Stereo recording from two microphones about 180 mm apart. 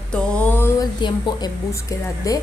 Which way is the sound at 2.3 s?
20° left (ahead or behind).